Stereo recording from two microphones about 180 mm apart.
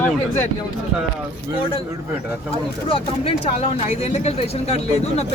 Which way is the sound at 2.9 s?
35° left (ahead or behind).